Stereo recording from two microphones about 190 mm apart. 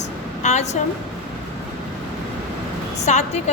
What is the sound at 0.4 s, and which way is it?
Speech, 35° left (ahead or behind).